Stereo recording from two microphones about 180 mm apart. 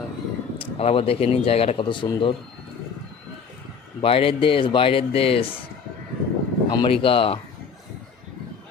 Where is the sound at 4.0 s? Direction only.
30° left (ahead or behind).